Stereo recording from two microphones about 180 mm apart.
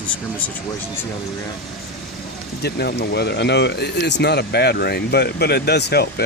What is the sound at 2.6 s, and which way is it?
Speech, 65° left (ahead or behind).